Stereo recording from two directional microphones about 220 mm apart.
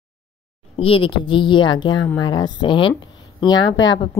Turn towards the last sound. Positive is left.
turn(degrees=60)  # may be behind; listen again after turning